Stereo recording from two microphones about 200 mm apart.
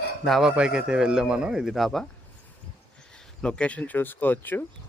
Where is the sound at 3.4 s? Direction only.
5° left (ahead or behind).